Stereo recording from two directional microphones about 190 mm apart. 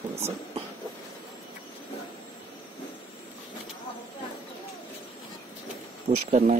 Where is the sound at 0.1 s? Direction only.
35° right (ahead or behind).